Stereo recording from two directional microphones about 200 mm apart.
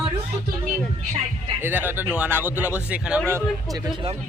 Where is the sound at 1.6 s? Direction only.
10° right (ahead or behind).